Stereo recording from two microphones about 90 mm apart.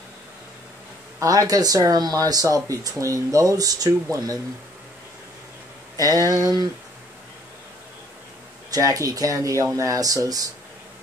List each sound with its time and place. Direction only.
1.2 s speech: 45° right (ahead or behind)
5.9 s speech: 45° right (ahead or behind)
8.7 s speech: 40° right (ahead or behind)